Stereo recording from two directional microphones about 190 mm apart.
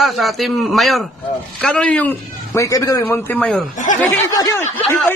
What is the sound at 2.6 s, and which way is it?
Speech, 15° left (ahead or behind).